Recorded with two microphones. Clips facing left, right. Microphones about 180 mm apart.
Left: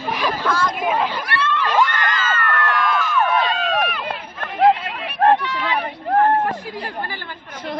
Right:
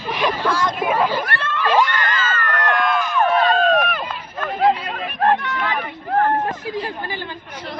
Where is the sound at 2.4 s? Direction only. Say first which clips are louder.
Right 2 dB; 40° right (ahead or behind).